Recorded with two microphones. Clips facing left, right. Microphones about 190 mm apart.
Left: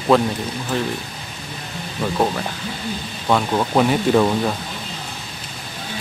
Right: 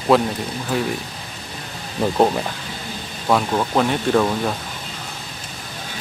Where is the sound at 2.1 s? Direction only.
20° right (ahead or behind).